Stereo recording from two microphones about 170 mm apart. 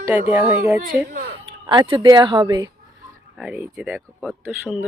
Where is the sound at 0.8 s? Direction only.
55° right (ahead or behind).